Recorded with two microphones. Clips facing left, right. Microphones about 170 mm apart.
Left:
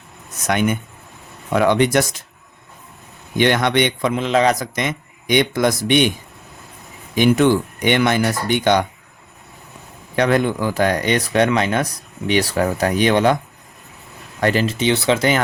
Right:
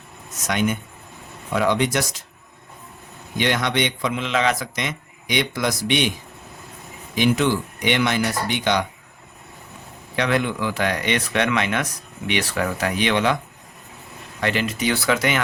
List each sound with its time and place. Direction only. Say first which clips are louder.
0.4 s speech: left 4 dB; 55° left (ahead or behind)
3.3 s a man's voice: left 6 dB; 55° left (ahead or behind)
7.2 s a man's voice: left 5 dB; 50° left (ahead or behind)
10.2 s speech: left 5 dB; 45° left (ahead or behind)
14.4 s speech: left 5 dB; 35° left (ahead or behind)